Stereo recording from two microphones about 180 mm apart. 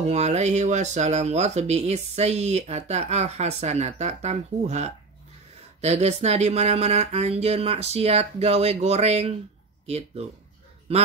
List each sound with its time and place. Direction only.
0.0 s speech: 35° right (ahead or behind)